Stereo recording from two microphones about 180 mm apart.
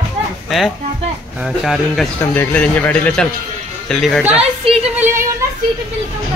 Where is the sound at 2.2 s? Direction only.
10° left (ahead or behind); by 5.1 s 5° right (ahead or behind).